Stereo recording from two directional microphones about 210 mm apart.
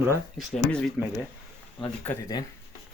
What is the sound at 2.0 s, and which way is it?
Speech, 10° left (ahead or behind).